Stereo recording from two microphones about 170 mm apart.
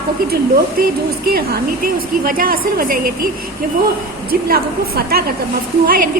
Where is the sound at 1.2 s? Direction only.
65° right (ahead or behind).